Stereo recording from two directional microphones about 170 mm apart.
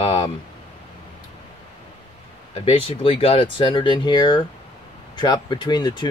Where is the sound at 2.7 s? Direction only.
35° left (ahead or behind).